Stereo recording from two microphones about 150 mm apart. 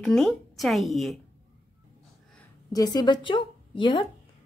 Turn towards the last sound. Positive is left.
turn(degrees=35)  # may be behind; listen again after turning